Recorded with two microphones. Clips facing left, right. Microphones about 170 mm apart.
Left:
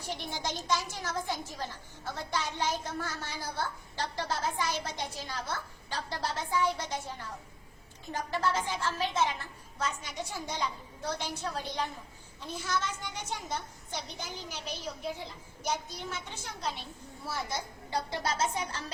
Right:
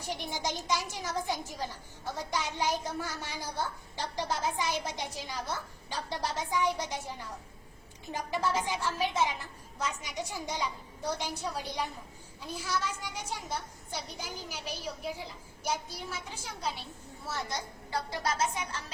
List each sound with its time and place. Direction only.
0.1 s a woman's voice: 15° right (ahead or behind)
17.9 s speech: 20° left (ahead or behind)